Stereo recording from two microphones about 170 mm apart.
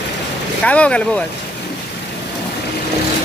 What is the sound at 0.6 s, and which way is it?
Speech, 5° left (ahead or behind).